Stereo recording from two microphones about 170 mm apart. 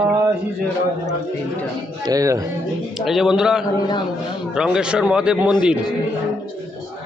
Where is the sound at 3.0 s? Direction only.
Centre (ahead or behind).